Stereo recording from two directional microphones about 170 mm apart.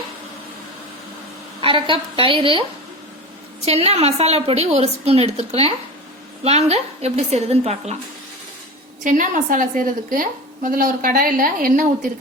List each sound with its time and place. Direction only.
1.6 s a woman's voice: 30° right (ahead or behind)
3.7 s a woman's voice: 40° right (ahead or behind)
9.0 s a woman's voice: 50° right (ahead or behind)